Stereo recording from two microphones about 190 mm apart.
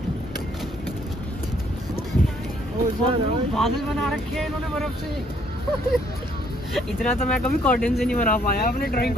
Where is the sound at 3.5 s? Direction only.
Centre (ahead or behind).